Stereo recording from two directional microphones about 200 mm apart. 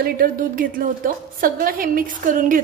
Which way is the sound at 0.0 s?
45° right (ahead or behind).